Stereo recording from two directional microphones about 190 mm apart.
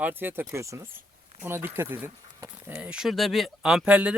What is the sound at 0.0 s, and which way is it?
Speech, 10° right (ahead or behind).